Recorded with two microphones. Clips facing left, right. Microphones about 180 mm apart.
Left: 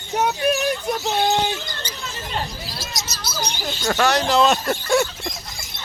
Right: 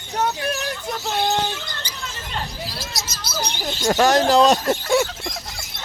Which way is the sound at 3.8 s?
35° right (ahead or behind).